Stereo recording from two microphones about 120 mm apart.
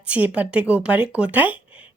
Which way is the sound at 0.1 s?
10° right (ahead or behind).